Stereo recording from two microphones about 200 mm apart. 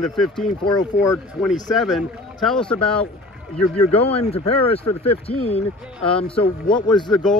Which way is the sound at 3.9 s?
30° left (ahead or behind).